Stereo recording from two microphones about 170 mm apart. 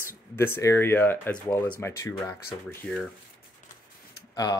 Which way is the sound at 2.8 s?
Centre (ahead or behind).